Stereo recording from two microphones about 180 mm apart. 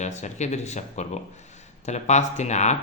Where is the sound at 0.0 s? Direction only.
40° left (ahead or behind).